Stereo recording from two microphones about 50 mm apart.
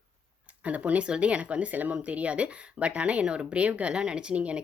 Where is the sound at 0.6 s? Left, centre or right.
Right.